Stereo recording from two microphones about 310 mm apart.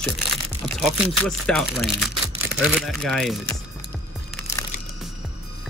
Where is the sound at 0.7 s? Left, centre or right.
Centre.